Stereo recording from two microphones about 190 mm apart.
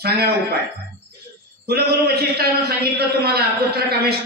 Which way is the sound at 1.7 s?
55° right (ahead or behind).